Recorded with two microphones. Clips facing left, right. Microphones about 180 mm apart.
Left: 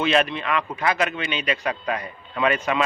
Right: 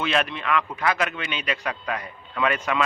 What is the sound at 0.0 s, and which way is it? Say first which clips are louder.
A man's voice: left 4 dB; 25° left (ahead or behind).